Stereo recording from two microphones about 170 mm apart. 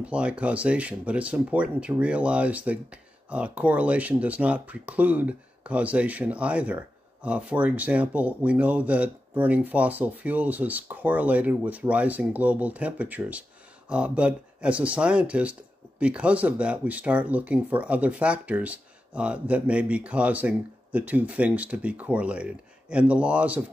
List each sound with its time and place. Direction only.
0.0 s speech: 5° right (ahead or behind)